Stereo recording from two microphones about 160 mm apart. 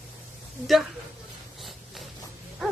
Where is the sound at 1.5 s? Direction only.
Centre (ahead or behind).